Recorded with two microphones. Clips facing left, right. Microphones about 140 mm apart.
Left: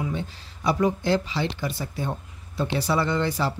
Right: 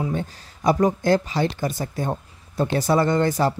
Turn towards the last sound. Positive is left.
turn(degrees=-45)  # may be behind; listen again after turning